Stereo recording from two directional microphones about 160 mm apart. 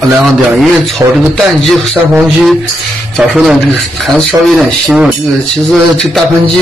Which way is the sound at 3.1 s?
Centre (ahead or behind).